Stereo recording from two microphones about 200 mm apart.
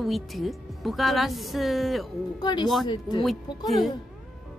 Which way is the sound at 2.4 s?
20° left (ahead or behind).